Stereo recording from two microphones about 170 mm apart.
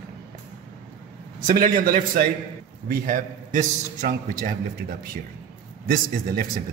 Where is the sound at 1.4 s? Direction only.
55° right (ahead or behind).